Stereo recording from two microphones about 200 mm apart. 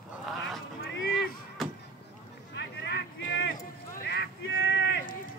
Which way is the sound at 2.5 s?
60° left (ahead or behind).